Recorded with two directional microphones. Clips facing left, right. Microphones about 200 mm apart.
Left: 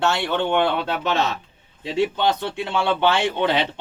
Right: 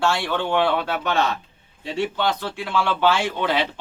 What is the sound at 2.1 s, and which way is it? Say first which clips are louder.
Speech: left 2 dB; 20° left (ahead or behind).